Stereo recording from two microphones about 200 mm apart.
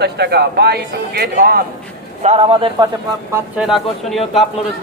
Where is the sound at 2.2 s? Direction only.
30° right (ahead or behind).